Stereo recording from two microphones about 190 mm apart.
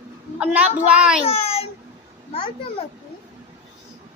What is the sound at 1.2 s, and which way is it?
Speech, 30° left (ahead or behind).